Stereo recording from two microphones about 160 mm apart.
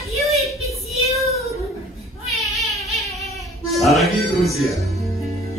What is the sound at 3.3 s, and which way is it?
Music, centre (ahead or behind).